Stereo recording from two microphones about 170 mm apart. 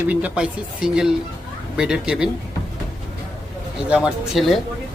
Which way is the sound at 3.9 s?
5° right (ahead or behind).